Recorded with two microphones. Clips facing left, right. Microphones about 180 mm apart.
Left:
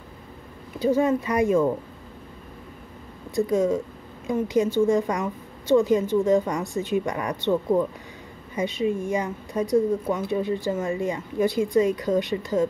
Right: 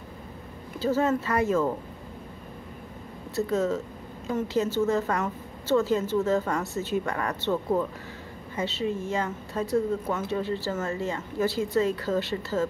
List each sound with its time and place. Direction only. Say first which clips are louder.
0.7 s a woman's voice: left 4 dB; 15° left (ahead or behind)
3.3 s a woman's voice: left 4 dB; 15° left (ahead or behind)
8.5 s a woman's voice: left 4 dB; 15° left (ahead or behind)